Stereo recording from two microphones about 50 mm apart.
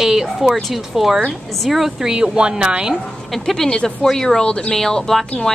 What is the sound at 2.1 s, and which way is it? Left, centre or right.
Speech, centre.